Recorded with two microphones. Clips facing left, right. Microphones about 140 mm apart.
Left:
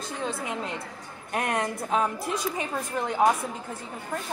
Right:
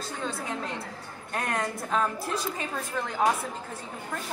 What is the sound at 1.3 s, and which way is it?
A woman's voice, 15° left (ahead or behind).